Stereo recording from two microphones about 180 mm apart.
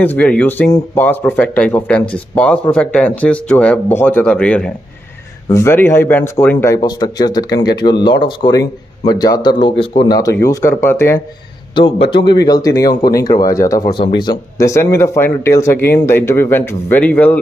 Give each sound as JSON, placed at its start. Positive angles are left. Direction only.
{"t": 0.0, "sound": "speech", "side_deg": 10}
{"t": 11.7, "sound": "speech", "side_deg": 30}